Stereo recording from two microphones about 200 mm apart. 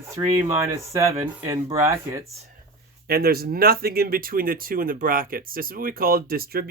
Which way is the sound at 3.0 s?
50° right (ahead or behind).